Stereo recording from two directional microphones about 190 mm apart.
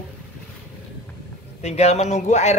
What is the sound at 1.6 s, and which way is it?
Speech, 35° left (ahead or behind).